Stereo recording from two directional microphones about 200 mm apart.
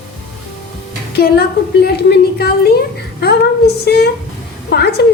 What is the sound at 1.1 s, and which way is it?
A woman's voice, 50° left (ahead or behind).